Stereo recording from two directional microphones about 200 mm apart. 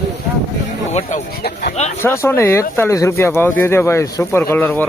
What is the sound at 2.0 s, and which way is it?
Speech, 10° left (ahead or behind).